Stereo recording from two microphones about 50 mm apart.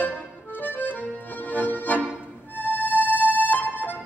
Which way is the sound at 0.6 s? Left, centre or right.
Left.